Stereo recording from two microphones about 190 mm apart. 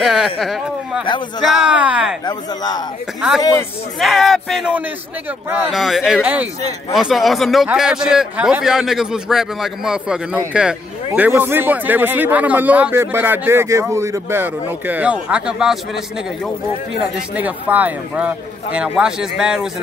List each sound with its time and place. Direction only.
0.0 s speech: centre (ahead or behind)
2.2 s speech: 20° left (ahead or behind)
3.2 s speech: 5° right (ahead or behind)
17.0 s speech: 10° right (ahead or behind)